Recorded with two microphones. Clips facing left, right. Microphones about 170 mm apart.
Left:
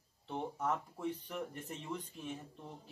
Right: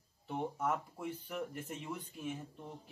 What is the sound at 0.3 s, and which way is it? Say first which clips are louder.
Speech: right 1 dB; 10° right (ahead or behind).